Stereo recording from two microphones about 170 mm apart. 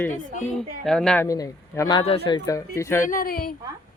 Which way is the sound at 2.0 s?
30° left (ahead or behind).